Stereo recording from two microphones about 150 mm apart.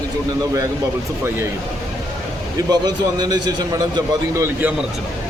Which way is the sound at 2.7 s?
25° right (ahead or behind).